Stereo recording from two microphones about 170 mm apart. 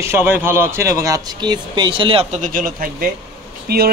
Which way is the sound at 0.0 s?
15° right (ahead or behind).